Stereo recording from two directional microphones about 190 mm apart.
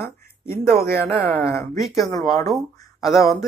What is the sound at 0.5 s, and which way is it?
Speech, 10° left (ahead or behind).